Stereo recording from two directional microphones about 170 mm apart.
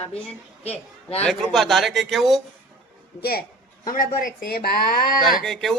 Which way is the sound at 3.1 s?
65° left (ahead or behind).